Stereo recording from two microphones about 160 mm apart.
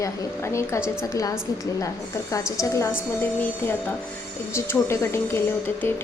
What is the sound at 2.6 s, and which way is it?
A woman's voice, 20° left (ahead or behind).